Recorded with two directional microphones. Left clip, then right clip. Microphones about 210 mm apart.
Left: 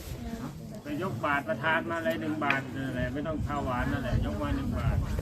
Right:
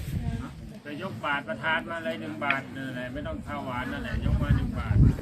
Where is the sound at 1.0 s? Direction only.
30° right (ahead or behind).